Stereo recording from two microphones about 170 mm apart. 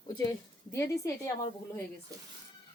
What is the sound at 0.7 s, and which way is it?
Speech, 20° left (ahead or behind).